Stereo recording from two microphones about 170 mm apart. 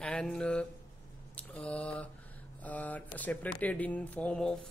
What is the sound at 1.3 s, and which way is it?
Mantra, 5° left (ahead or behind).